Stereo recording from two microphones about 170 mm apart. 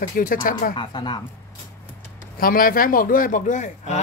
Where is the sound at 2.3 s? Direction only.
55° left (ahead or behind).